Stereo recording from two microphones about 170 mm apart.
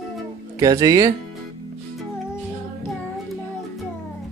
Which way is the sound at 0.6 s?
20° right (ahead or behind).